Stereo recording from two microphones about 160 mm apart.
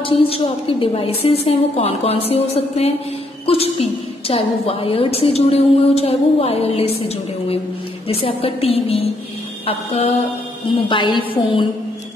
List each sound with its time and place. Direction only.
0.0 s a woman's voice: 35° left (ahead or behind)